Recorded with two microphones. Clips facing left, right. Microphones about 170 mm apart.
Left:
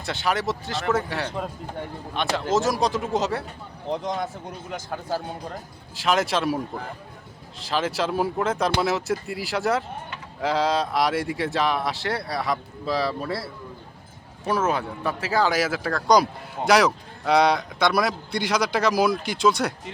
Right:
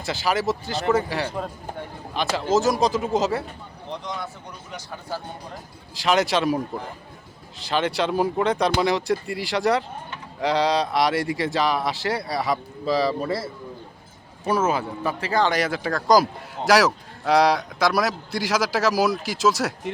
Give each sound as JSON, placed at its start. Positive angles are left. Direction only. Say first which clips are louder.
{"t": 0.0, "sound": "speech", "louder": "right 2 dB", "side_deg": 0}
{"t": 3.9, "sound": "speech", "louder": "left 5 dB", "side_deg": 45}
{"t": 5.9, "sound": "speech", "louder": "right 2 dB", "side_deg": 0}
{"t": 7.6, "sound": "speech", "louder": "right 2 dB", "side_deg": 0}